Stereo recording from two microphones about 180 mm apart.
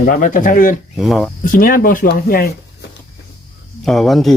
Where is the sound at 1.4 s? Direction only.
50° left (ahead or behind).